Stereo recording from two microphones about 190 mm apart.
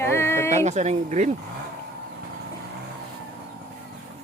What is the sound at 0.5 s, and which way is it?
Speech, 40° right (ahead or behind).